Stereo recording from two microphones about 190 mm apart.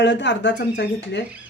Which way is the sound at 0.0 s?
70° left (ahead or behind).